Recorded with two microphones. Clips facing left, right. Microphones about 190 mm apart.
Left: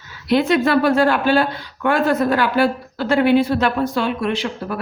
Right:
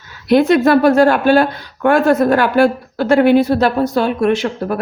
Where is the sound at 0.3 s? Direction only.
45° right (ahead or behind).